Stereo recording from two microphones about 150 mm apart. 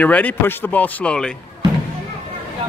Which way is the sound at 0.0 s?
10° left (ahead or behind).